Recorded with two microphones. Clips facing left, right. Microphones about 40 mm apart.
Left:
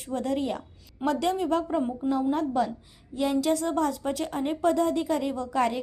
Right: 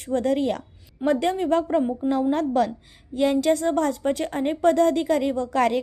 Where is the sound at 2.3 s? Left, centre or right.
Right.